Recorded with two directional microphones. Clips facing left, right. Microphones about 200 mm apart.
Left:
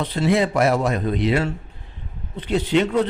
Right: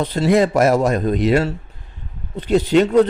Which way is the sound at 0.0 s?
40° right (ahead or behind).